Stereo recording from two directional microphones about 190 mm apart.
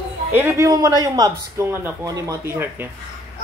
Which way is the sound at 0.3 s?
10° right (ahead or behind).